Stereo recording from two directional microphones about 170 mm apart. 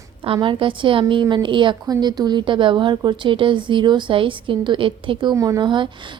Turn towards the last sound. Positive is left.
turn(degrees=-25)  # may be behind; listen again after turning